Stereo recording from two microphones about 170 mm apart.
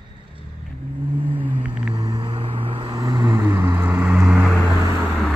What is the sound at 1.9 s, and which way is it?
Vehicle, 25° right (ahead or behind).